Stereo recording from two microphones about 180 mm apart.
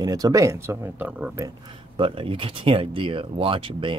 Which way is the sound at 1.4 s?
30° right (ahead or behind).